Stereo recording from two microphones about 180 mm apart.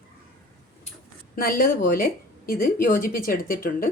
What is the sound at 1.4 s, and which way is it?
Speech, 55° left (ahead or behind).